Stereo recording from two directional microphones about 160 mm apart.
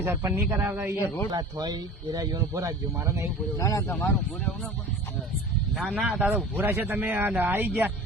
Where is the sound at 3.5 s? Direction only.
20° left (ahead or behind).